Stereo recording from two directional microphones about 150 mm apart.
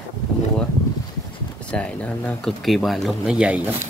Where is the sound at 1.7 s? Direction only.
10° left (ahead or behind); by 3.6 s 5° right (ahead or behind).